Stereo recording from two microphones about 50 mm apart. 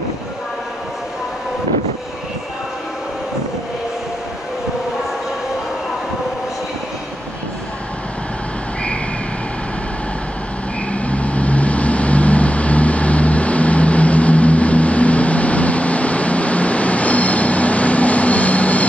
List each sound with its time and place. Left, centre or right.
10.9 s vehicle: left